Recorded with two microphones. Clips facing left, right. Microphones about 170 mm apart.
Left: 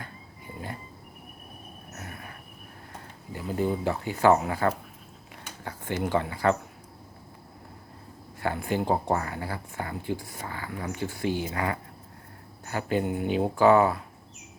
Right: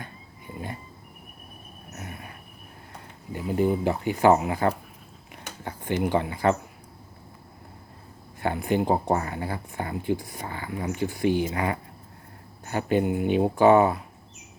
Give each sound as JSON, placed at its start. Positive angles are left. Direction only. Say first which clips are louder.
{"t": 2.0, "sound": "vehicle", "louder": "right 2 dB", "side_deg": -20}
{"t": 3.3, "sound": "speech", "louder": "right 4 dB", "side_deg": -15}
{"t": 8.4, "sound": "speech", "louder": "right 3 dB", "side_deg": -20}